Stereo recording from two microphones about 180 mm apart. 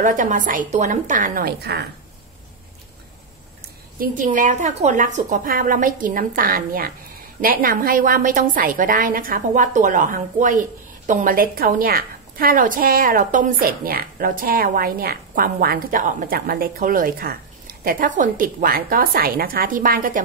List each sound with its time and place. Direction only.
0.0 s a woman's voice: 45° right (ahead or behind)
4.0 s a woman's voice: 45° right (ahead or behind)